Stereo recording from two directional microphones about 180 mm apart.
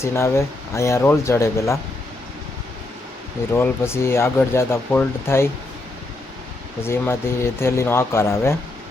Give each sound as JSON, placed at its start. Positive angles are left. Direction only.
{"t": 0.0, "sound": "speech", "side_deg": 15}
{"t": 3.5, "sound": "speech", "side_deg": 15}
{"t": 6.8, "sound": "speech", "side_deg": 15}